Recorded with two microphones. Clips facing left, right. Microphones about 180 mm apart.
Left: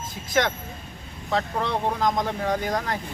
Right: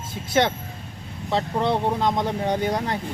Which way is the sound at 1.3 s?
30° right (ahead or behind).